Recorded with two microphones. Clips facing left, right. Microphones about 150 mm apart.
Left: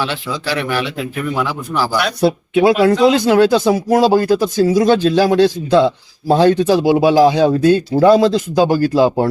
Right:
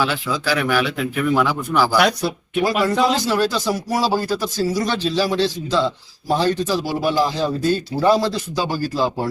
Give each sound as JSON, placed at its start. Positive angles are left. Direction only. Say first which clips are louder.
{"t": 0.0, "sound": "speech", "louder": "even", "side_deg": 0}
{"t": 2.2, "sound": "speech", "louder": "left 9 dB", "side_deg": 60}